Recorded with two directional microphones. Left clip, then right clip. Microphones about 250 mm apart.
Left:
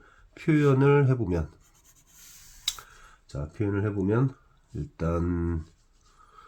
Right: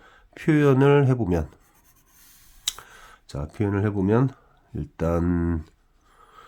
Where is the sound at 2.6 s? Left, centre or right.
Right.